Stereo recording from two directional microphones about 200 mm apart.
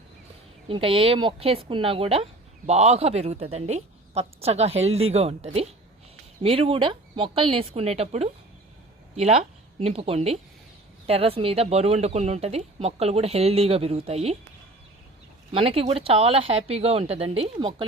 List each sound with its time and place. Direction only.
0.7 s speech: 25° right (ahead or behind)
15.5 s speech: 30° right (ahead or behind)